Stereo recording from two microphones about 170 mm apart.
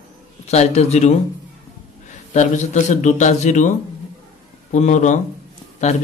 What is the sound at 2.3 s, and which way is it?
A man's voice, 45° left (ahead or behind).